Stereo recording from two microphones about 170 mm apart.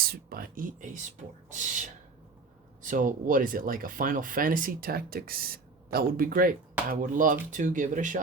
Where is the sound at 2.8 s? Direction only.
50° right (ahead or behind).